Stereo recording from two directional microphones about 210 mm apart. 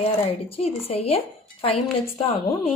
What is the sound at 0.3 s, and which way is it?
A woman's voice, 30° left (ahead or behind).